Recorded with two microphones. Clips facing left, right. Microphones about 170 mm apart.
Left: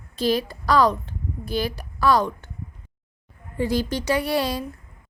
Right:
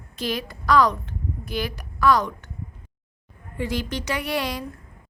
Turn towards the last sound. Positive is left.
turn(degrees=30)  # may be behind; listen again after turning